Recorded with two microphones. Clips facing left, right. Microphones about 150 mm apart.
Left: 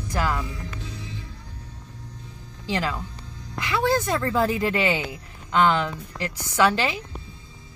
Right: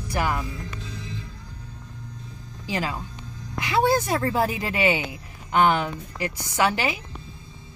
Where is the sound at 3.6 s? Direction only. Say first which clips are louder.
Right 2 dB; 20° right (ahead or behind).